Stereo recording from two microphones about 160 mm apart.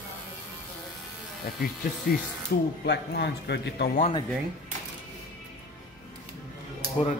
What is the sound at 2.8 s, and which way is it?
A man's voice, 90° left.